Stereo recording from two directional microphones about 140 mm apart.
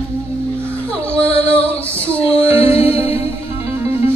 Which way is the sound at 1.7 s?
10° left (ahead or behind).